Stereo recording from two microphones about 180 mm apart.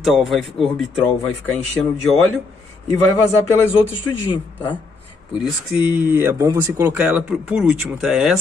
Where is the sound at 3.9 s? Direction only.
25° left (ahead or behind).